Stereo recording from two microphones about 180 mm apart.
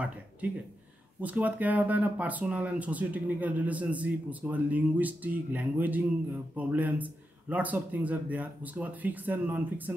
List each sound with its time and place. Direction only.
1.2 s speech: 10° right (ahead or behind)